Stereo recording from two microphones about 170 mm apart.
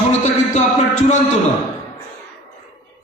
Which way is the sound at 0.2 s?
45° left (ahead or behind).